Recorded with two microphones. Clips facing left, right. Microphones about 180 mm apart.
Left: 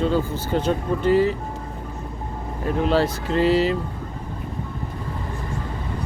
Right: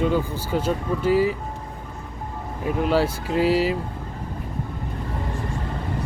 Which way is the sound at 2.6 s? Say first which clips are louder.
Left 1 dB; 10° right (ahead or behind).